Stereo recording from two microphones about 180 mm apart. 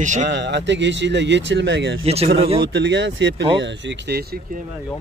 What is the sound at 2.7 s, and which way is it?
Speech, 75° right (ahead or behind).